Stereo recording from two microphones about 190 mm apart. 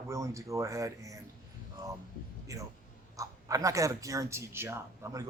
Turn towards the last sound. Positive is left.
turn(degrees=-15)  # may be behind; listen again after turning